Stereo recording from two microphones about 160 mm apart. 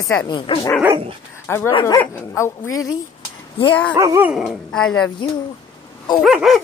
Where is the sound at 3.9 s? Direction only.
20° right (ahead or behind).